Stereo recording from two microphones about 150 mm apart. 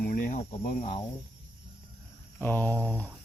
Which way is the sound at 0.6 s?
45° left (ahead or behind).